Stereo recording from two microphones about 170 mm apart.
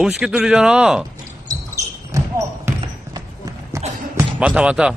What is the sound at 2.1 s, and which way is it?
Basketball bounce, 15° right (ahead or behind).